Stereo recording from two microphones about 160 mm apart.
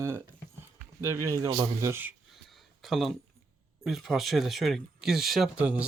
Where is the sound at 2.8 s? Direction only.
Centre (ahead or behind).